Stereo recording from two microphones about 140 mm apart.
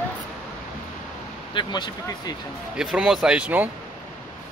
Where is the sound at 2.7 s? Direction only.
5° right (ahead or behind).